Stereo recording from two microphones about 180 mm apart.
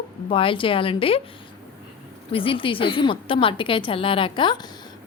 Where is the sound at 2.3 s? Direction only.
30° left (ahead or behind).